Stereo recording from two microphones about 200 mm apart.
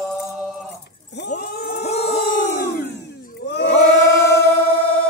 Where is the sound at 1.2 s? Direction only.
50° left (ahead or behind).